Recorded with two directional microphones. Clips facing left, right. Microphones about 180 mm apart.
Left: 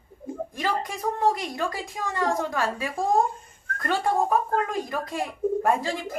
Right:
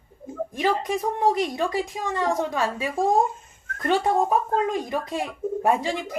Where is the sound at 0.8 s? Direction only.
20° right (ahead or behind).